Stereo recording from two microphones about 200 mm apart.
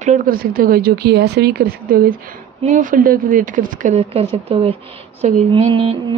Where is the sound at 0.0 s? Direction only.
40° right (ahead or behind).